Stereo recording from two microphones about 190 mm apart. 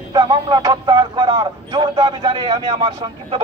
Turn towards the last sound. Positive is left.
turn(degrees=-25)  # may be behind; listen again after turning